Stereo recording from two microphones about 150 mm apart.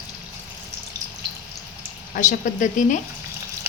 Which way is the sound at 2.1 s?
60° left (ahead or behind).